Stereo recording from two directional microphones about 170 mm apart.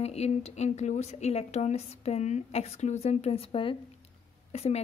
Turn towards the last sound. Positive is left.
turn(degrees=40)  # may be behind; listen again after turning